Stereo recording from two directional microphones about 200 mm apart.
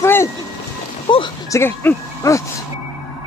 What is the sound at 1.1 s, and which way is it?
Speech, 25° left (ahead or behind).